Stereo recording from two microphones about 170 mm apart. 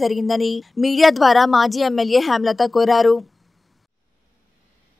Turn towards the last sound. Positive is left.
turn(degrees=0)  # may be behind; listen again after turning